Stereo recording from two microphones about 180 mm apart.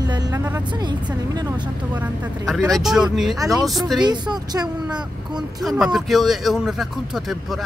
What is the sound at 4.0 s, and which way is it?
Speech, 25° right (ahead or behind).